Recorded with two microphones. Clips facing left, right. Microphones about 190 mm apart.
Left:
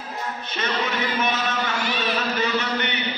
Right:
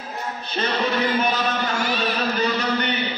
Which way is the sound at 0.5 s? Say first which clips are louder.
Right 4 dB; 35° right (ahead or behind).